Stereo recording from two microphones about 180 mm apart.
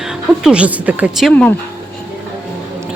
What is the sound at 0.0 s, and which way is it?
A woman's voice, 5° right (ahead or behind).